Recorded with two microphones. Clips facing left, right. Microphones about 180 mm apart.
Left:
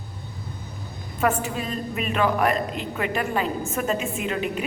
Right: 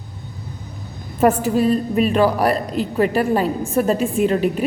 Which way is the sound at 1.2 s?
40° right (ahead or behind).